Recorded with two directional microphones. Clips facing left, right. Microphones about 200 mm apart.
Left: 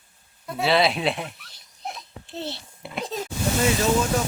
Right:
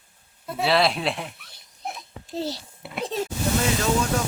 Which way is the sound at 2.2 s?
40° right (ahead or behind).